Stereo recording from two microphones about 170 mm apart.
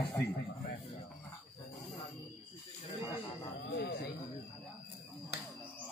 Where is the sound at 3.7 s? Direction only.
75° left (ahead or behind).